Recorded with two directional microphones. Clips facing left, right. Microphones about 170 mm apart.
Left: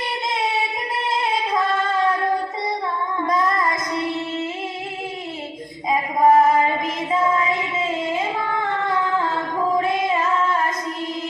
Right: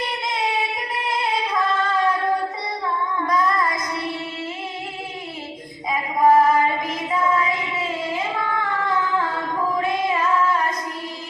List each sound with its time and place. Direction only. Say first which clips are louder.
1.1 s singing: left 1 dB; 25° left (ahead or behind)
3.2 s child singing: even; 25° left (ahead or behind)
5.9 s music: left 1 dB; 25° left (ahead or behind)